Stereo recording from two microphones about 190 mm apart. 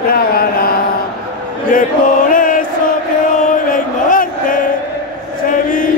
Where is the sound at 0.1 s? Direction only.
50° left (ahead or behind).